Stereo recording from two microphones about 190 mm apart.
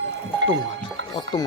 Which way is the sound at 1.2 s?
20° left (ahead or behind).